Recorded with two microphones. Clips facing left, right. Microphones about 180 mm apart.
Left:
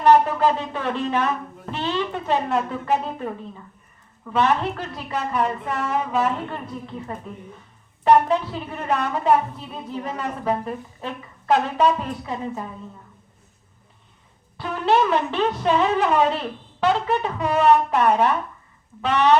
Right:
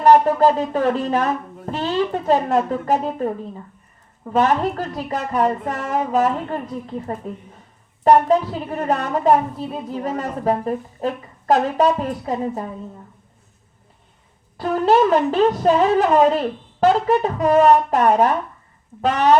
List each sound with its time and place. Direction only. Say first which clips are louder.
0.0 s a woman's voice: right 3 dB; 40° right (ahead or behind)
14.6 s a woman's voice: right 4 dB; 40° right (ahead or behind)